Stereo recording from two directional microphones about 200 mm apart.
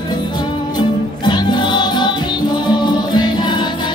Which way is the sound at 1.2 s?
20° left (ahead or behind).